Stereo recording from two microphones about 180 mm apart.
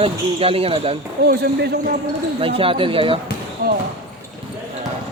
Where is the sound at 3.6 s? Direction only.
60° right (ahead or behind).